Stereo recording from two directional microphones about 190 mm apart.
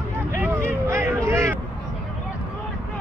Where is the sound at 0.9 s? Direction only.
15° right (ahead or behind).